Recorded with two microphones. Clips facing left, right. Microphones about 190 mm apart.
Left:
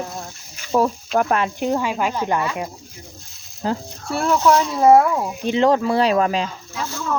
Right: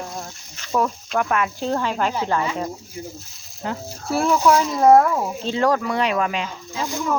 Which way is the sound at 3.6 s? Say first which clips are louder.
Left 5 dB; 30° left (ahead or behind).